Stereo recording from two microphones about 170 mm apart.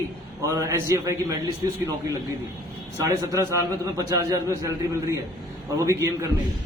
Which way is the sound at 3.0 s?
20° right (ahead or behind).